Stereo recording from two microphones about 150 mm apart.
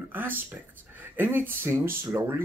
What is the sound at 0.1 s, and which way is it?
Speech, 15° right (ahead or behind).